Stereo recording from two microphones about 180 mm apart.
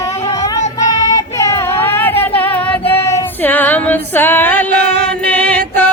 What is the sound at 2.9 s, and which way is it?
Female singing, 15° left (ahead or behind).